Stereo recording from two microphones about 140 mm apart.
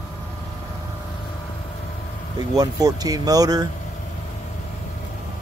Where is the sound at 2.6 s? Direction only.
25° right (ahead or behind).